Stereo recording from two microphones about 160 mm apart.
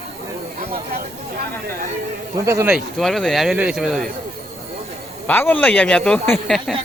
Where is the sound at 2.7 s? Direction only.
Centre (ahead or behind).